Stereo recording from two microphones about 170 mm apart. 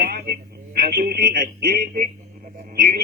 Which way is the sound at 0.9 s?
60° right (ahead or behind).